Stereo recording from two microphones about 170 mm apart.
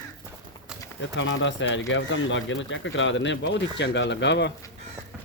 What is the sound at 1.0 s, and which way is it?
Speech, 90° left.